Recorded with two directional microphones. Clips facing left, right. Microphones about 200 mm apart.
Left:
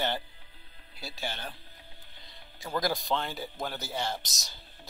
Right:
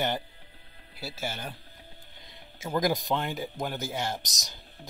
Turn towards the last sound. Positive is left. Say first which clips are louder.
# right 1 dB
turn(degrees=-15)  # may be behind; listen again after turning